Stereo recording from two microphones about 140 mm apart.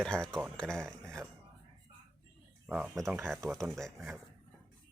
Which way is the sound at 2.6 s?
10° right (ahead or behind).